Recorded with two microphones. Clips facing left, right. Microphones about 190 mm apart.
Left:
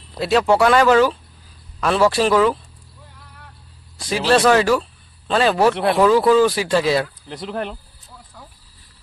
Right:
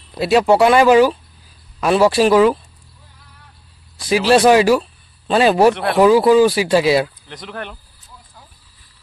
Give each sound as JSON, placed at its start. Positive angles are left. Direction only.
{"t": 0.2, "sound": "speech", "side_deg": -10}
{"t": 4.3, "sound": "speech", "side_deg": -10}
{"t": 7.2, "sound": "speech", "side_deg": 30}